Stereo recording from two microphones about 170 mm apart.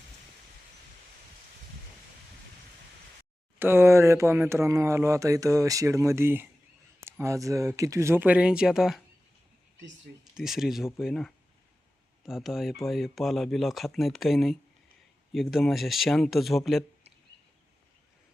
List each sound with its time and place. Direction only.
3.6 s speech: 15° right (ahead or behind)
10.3 s speech: centre (ahead or behind)